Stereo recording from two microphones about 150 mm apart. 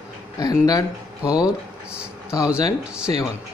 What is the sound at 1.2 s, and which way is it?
Speech, 5° right (ahead or behind).